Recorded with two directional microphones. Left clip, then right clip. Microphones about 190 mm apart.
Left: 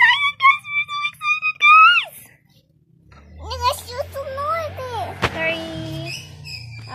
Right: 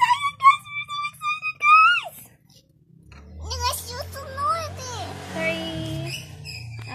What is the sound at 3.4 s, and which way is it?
Music, 35° left (ahead or behind).